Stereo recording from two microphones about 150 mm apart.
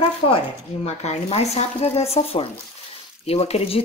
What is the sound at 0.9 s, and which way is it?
Speech, 45° left (ahead or behind).